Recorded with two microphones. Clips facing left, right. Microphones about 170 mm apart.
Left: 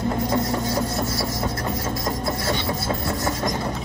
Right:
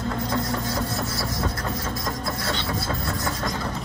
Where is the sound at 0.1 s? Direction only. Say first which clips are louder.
Left 2 dB; 20° left (ahead or behind).